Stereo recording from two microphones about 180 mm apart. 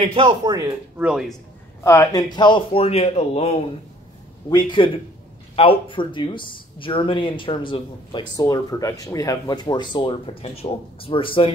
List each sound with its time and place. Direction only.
0.0 s speech: 30° right (ahead or behind)
1.8 s speech: 15° left (ahead or behind); by 3.6 s 35° left (ahead or behind)
4.5 s speech: 25° left (ahead or behind)